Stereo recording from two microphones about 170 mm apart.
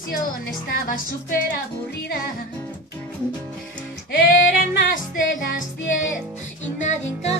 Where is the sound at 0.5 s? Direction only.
55° left (ahead or behind).